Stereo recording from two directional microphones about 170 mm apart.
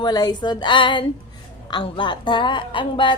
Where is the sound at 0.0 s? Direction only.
25° left (ahead or behind).